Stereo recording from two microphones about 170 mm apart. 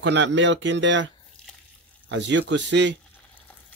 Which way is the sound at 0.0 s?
90° right.